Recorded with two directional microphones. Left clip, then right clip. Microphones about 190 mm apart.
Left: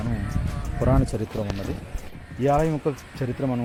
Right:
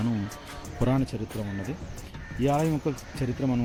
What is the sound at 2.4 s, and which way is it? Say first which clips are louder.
Speech: left 4 dB; centre (ahead or behind).